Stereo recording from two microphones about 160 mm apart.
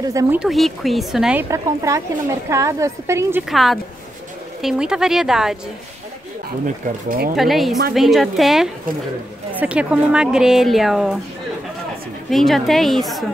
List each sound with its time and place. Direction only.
0.1 s a woman's voice: 20° right (ahead or behind)
0.4 s speech: centre (ahead or behind)
1.5 s a woman's voice: 20° right (ahead or behind)
3.4 s speech: centre (ahead or behind)
7.1 s speech: 60° right (ahead or behind)
7.3 s speech: centre (ahead or behind)
12.3 s speech: centre (ahead or behind)